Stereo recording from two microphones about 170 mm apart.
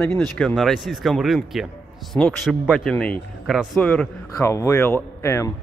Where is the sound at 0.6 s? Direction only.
Centre (ahead or behind).